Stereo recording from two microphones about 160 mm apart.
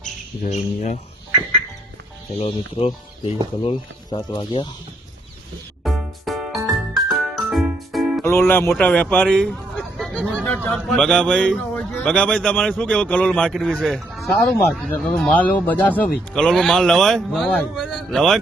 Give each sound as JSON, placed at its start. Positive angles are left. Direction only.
{"t": 0.0, "sound": "mantra", "side_deg": 50}
{"t": 2.4, "sound": "speech", "side_deg": 35}
{"t": 5.8, "sound": "music", "side_deg": 0}
{"t": 8.2, "sound": "a man's voice", "side_deg": 15}